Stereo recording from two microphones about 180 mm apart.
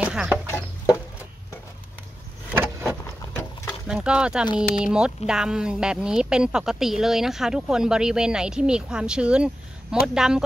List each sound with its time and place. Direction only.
0.0 s chicken: 5° right (ahead or behind)
0.5 s chicken: 15° left (ahead or behind)
2.5 s vehicle: 10° right (ahead or behind)
3.8 s speech: 5° right (ahead or behind)